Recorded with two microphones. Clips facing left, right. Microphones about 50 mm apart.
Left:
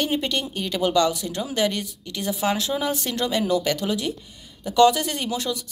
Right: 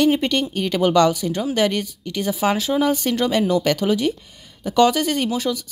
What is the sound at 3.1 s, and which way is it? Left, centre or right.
Speech, right.